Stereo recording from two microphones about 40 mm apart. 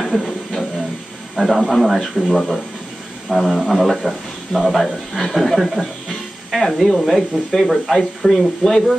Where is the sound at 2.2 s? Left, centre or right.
Centre.